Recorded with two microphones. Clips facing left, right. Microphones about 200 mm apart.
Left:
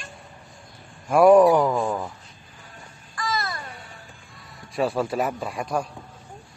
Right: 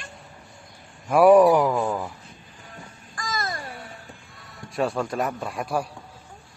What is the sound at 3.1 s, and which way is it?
Babbling, 45° right (ahead or behind).